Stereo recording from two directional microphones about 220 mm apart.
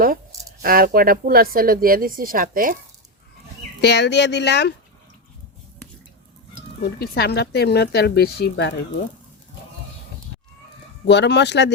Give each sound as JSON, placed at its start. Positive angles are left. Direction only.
{"t": 0.6, "sound": "speech", "side_deg": -40}
{"t": 3.8, "sound": "speech", "side_deg": 50}
{"t": 6.8, "sound": "speech", "side_deg": 45}
{"t": 11.0, "sound": "speech", "side_deg": 50}